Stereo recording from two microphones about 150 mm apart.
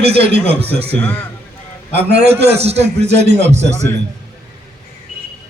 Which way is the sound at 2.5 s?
45° right (ahead or behind).